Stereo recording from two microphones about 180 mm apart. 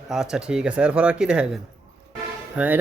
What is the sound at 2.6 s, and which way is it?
Speech, 5° right (ahead or behind).